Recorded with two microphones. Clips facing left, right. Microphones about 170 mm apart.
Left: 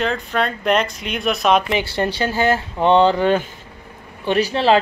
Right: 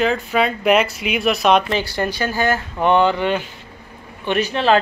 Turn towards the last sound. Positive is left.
turn(degrees=30)  # may be behind; listen again after turning